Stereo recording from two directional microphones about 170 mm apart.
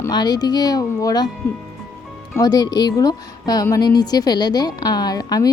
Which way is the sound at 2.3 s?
25° left (ahead or behind).